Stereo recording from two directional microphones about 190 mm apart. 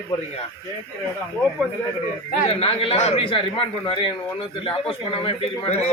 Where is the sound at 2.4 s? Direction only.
30° left (ahead or behind).